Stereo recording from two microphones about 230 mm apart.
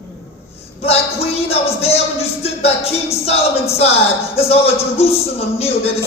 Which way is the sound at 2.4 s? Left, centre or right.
Left.